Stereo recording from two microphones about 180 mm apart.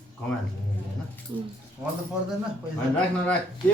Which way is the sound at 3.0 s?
10° left (ahead or behind).